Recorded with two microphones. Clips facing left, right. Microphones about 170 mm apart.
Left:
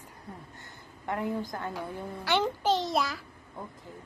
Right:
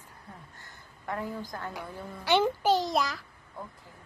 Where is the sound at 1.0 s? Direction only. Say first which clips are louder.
Left 3 dB; 20° left (ahead or behind).